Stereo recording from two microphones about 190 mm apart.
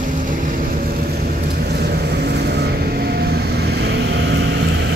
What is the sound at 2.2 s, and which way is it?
Vehicle, 60° right (ahead or behind).